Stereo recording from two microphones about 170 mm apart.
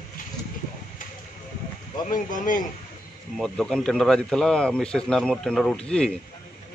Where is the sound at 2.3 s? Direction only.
50° left (ahead or behind).